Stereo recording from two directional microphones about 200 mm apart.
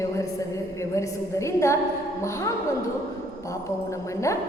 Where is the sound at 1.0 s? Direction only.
15° left (ahead or behind).